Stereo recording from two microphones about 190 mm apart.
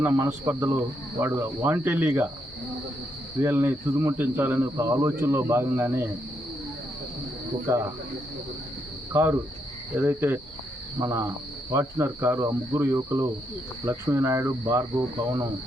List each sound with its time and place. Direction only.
0.0 s speech: 10° right (ahead or behind)
3.4 s speech: 10° right (ahead or behind)
7.7 s speech: 15° right (ahead or behind)
9.1 s speech: 15° right (ahead or behind)